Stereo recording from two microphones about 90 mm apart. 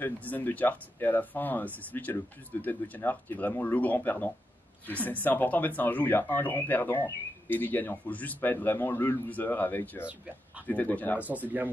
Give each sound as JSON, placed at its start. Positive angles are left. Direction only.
{"t": 0.0, "sound": "speech", "side_deg": 20}
{"t": 11.1, "sound": "speech", "side_deg": -20}